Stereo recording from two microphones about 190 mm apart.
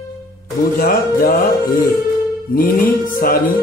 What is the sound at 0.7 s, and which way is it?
Speech, 50° left (ahead or behind).